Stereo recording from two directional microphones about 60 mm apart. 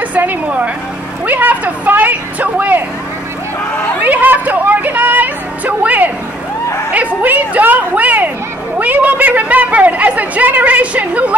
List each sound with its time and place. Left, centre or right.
0.1 s music: right
1.2 s a man's voice: right
4.0 s a sound: right
7.2 s a man's voice: right